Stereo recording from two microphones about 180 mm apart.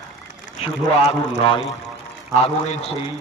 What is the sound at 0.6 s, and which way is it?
A man's voice, 35° left (ahead or behind).